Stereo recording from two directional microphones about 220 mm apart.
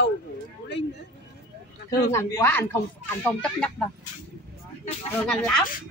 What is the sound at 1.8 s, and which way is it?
Speech, 15° left (ahead or behind).